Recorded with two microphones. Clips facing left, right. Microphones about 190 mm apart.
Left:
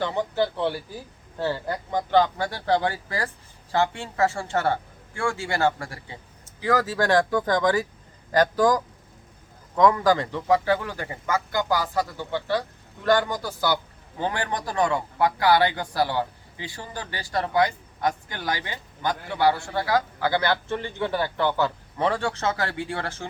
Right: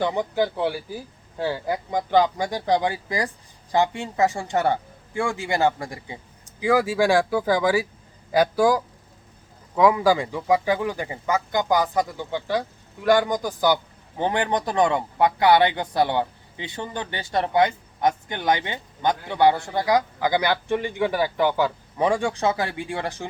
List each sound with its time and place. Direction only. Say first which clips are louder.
0.0 s a man's voice: right 2 dB; 15° right (ahead or behind)